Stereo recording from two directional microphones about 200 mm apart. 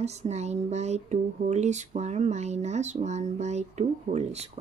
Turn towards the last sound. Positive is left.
turn(degrees=-35)  # may be behind; listen again after turning